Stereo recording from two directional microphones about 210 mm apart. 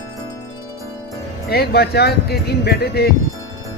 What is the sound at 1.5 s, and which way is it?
Speech, 50° left (ahead or behind).